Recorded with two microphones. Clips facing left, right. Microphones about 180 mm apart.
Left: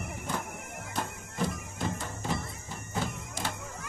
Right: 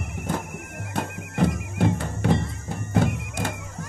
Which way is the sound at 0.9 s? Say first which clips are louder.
Right 8 dB; 65° right (ahead or behind).